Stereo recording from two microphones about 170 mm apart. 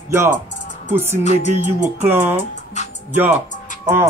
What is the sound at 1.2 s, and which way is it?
Music, 45° left (ahead or behind).